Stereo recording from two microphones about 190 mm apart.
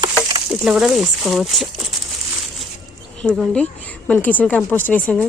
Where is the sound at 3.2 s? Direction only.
5° left (ahead or behind).